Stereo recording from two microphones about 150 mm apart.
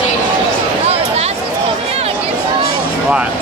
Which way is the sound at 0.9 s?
45° right (ahead or behind).